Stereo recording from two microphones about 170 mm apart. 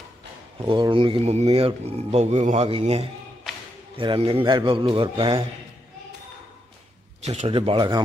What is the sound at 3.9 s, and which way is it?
Speech, 30° right (ahead or behind).